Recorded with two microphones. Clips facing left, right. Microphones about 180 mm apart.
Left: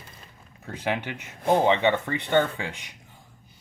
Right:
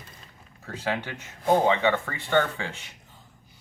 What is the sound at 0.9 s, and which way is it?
Speech, 20° left (ahead or behind).